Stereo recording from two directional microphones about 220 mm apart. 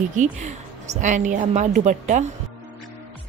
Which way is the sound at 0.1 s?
35° right (ahead or behind).